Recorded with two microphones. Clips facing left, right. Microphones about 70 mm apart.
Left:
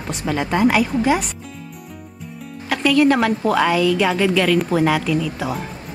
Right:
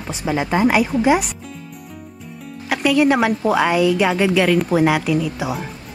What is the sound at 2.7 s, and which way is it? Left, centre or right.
Speech, centre.